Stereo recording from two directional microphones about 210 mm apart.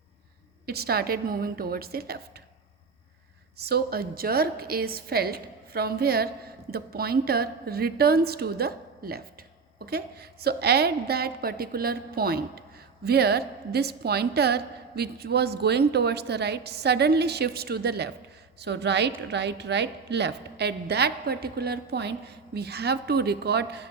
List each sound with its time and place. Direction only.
0.6 s a woman's voice: 50° right (ahead or behind)
3.6 s a woman's voice: 50° right (ahead or behind)